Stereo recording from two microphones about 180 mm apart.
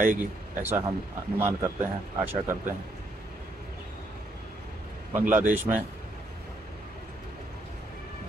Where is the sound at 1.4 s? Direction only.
15° right (ahead or behind).